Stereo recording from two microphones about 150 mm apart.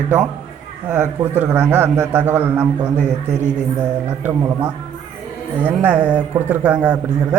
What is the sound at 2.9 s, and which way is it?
Speech, 55° right (ahead or behind).